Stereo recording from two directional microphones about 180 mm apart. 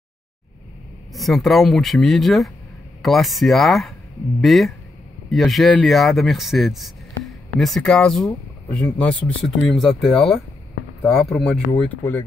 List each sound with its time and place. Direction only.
1.1 s speech: centre (ahead or behind)